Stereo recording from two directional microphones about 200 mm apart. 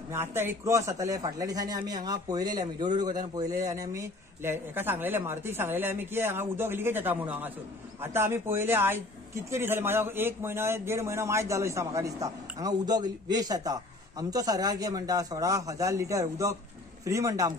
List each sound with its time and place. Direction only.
0.1 s a man's voice: 10° right (ahead or behind)